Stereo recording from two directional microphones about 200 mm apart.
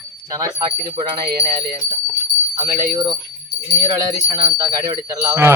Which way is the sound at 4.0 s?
20° right (ahead or behind).